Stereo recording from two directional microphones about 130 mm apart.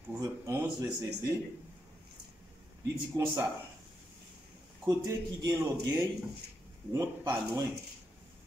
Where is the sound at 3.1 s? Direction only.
25° right (ahead or behind).